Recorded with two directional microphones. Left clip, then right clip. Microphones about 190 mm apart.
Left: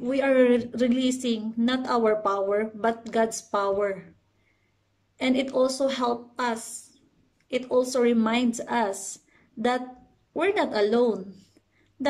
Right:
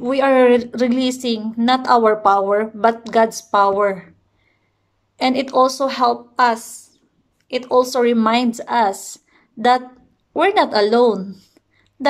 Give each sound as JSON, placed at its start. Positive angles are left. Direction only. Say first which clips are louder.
{"t": 0.0, "sound": "a woman's voice", "louder": "right 8 dB", "side_deg": 15}
{"t": 5.2, "sound": "a woman's voice", "louder": "right 8 dB", "side_deg": 15}